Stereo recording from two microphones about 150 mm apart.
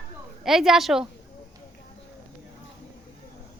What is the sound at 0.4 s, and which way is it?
Speech, centre (ahead or behind).